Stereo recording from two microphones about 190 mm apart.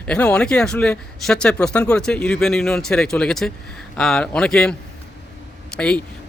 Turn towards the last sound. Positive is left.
turn(degrees=5)  # may be behind; listen again after turning